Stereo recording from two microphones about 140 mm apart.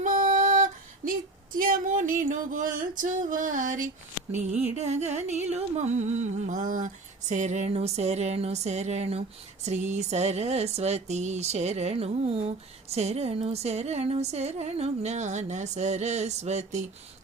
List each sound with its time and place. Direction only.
0.0 s female singing: 70° right (ahead or behind)
1.5 s a sound: 75° right (ahead or behind)
4.8 s speech: 50° right (ahead or behind)